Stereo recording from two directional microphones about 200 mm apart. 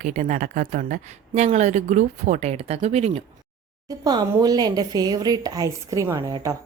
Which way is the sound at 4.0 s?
20° right (ahead or behind).